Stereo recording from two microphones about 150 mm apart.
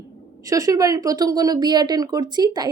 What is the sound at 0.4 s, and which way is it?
Speech, 25° right (ahead or behind).